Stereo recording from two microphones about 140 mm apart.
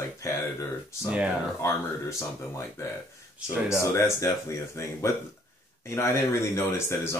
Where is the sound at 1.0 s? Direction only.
10° right (ahead or behind).